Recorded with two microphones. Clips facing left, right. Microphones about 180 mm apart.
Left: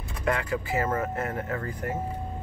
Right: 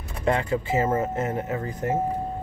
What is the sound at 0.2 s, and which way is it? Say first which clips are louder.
Speech: right 4 dB; 25° right (ahead or behind).